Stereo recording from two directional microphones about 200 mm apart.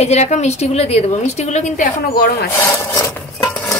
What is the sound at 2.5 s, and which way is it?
Rub, 15° left (ahead or behind).